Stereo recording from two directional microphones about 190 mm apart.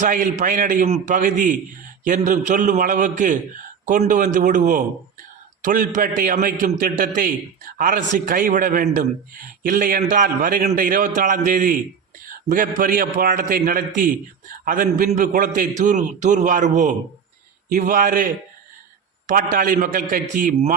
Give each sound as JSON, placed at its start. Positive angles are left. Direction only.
{"t": 0.0, "sound": "a man's voice", "side_deg": -45}
{"t": 19.3, "sound": "a man's voice", "side_deg": -45}